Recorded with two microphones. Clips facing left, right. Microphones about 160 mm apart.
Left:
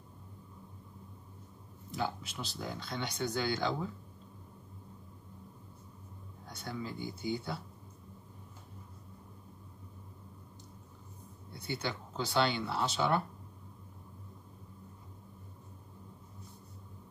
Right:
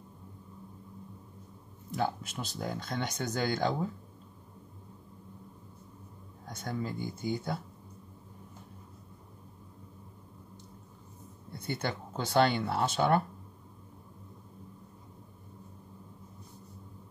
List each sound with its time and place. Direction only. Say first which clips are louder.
1.9 s speech: right 4 dB; 50° right (ahead or behind)
6.4 s speech: right 4 dB; 45° right (ahead or behind)
11.5 s speech: right 3 dB; 50° right (ahead or behind)